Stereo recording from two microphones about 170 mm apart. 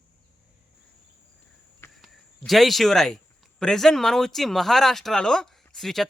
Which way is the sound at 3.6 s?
5° left (ahead or behind).